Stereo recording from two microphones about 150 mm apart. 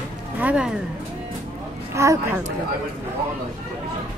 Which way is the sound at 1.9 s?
20° right (ahead or behind).